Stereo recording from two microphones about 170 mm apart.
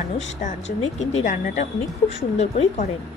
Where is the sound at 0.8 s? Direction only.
40° left (ahead or behind).